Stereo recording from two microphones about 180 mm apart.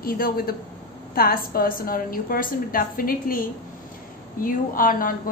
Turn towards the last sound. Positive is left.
turn(degrees=50)  # may be behind; listen again after turning